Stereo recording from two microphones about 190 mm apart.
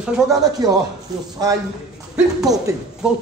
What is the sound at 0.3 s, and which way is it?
Speech, 20° right (ahead or behind).